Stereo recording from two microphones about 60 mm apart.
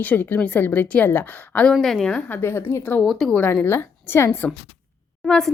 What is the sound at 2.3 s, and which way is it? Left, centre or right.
Speech, left.